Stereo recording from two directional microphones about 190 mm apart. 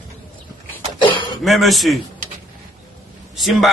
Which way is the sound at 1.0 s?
25° left (ahead or behind).